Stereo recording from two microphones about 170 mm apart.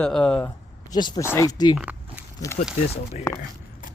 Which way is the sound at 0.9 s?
25° left (ahead or behind).